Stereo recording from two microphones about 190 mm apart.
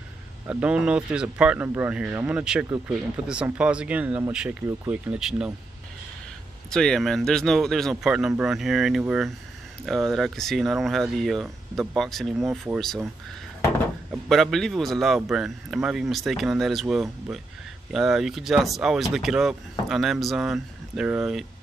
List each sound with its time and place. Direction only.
0.5 s speech: 5° right (ahead or behind)
6.7 s speech: 5° left (ahead or behind)
12.4 s speech: 15° right (ahead or behind)
12.7 s speech: centre (ahead or behind)
14.3 s speech: centre (ahead or behind)